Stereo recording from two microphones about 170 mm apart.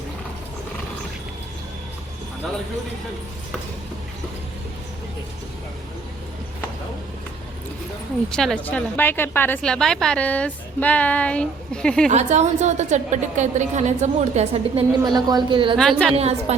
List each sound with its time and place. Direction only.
8.3 s a woman's voice: 5° left (ahead or behind)
12.0 s a woman's voice: 40° right (ahead or behind)
15.0 s a woman's voice: 25° right (ahead or behind)
15.8 s a woman's voice: centre (ahead or behind)
16.1 s a woman's voice: 40° right (ahead or behind)